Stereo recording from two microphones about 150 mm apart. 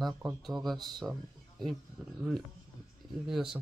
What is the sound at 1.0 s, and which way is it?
Speech, 10° right (ahead or behind).